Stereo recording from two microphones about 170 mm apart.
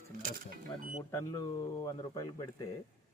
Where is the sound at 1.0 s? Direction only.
20° left (ahead or behind).